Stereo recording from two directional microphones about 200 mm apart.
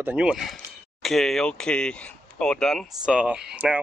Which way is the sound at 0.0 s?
5° right (ahead or behind).